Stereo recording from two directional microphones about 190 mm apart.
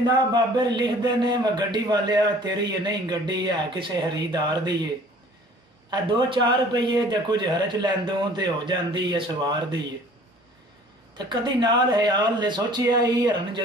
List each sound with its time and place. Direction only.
0.0 s a man's voice: 25° right (ahead or behind)
5.9 s a man's voice: 25° right (ahead or behind)
11.1 s a man's voice: 25° right (ahead or behind)